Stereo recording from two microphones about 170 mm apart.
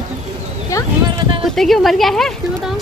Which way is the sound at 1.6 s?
Centre (ahead or behind).